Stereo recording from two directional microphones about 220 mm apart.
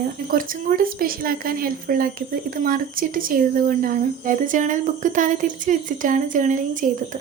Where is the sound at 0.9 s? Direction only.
40° right (ahead or behind).